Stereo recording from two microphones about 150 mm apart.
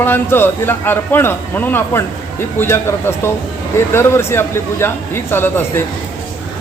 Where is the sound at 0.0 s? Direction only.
15° left (ahead or behind).